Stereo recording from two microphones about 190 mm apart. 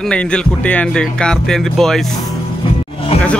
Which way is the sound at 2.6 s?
25° left (ahead or behind).